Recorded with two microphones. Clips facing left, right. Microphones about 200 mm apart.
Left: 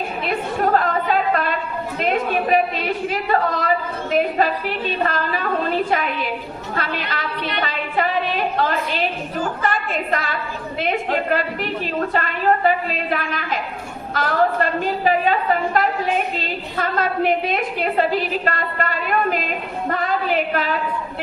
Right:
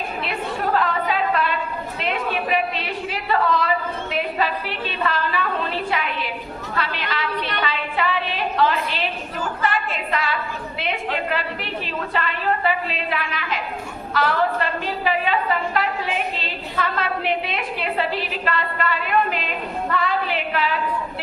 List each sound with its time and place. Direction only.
0.3 s chatter: 45° left (ahead or behind)
2.0 s a woman's voice: 45° left (ahead or behind)